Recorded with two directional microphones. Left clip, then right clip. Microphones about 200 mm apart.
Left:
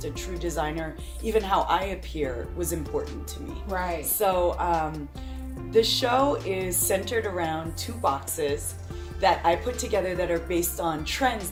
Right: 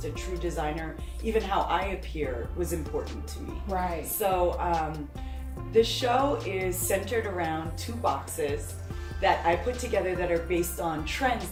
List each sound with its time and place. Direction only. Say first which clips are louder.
0.3 s speech: left 3 dB; 35° left (ahead or behind)
4.2 s speech: left 2 dB; 35° left (ahead or behind)